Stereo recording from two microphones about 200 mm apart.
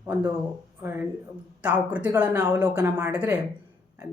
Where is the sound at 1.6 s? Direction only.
5° right (ahead or behind).